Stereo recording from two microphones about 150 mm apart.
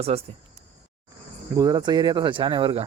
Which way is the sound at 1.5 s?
25° right (ahead or behind).